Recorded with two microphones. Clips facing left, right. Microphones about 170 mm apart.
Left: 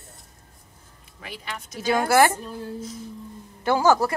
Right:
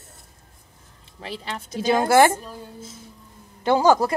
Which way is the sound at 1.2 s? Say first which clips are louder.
Right 4 dB; 30° right (ahead or behind).